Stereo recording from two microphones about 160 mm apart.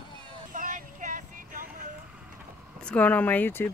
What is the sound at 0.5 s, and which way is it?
Vehicle, 55° right (ahead or behind).